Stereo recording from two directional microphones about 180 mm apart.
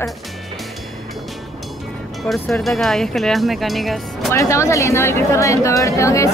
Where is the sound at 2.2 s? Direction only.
5° left (ahead or behind).